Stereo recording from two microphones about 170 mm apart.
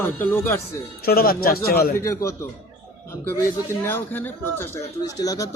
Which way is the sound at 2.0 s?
15° left (ahead or behind).